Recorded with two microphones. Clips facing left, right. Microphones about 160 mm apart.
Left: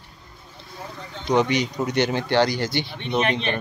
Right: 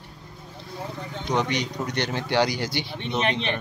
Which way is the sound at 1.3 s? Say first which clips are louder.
Left 5 dB; 5° left (ahead or behind).